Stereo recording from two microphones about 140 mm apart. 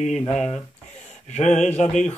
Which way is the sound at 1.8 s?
55° left (ahead or behind).